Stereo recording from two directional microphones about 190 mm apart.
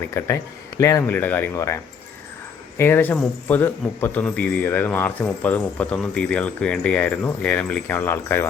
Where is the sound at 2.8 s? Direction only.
10° left (ahead or behind).